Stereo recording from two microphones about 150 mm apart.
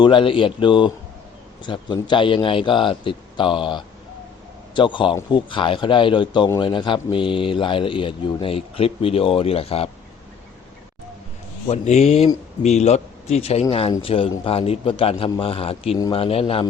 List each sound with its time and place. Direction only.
0.0 s a man's voice: 35° left (ahead or behind)
11.7 s a man's voice: 50° left (ahead or behind)